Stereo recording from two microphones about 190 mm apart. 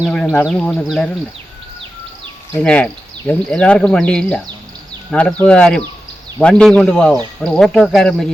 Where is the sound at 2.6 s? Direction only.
5° left (ahead or behind).